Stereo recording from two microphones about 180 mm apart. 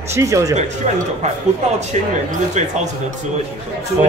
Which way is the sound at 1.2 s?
40° right (ahead or behind).